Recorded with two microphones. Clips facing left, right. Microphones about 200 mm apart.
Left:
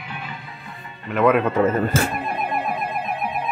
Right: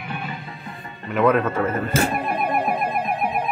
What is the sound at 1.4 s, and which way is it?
Speech, 15° left (ahead or behind).